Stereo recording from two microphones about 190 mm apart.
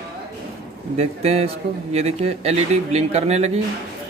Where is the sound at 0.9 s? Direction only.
35° right (ahead or behind).